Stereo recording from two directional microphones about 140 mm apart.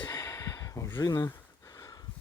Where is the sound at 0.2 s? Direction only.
25° left (ahead or behind).